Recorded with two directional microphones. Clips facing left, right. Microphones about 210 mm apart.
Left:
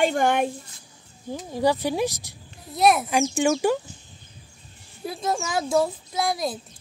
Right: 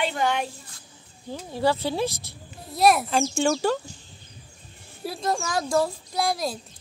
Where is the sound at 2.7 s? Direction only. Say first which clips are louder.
Even; centre (ahead or behind).